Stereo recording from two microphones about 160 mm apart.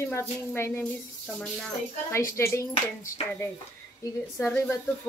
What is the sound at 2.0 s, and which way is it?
Speech, 15° left (ahead or behind).